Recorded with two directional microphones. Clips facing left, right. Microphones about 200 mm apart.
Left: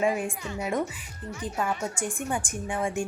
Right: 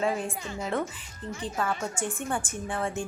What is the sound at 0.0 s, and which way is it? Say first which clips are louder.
A woman's voice: left 2 dB; 15° left (ahead or behind).